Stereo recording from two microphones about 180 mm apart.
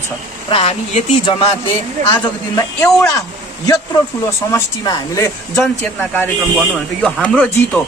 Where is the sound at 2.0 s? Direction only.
40° right (ahead or behind).